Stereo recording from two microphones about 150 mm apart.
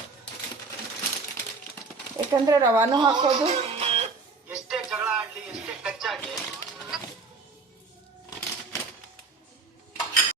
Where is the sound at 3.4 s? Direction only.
40° right (ahead or behind).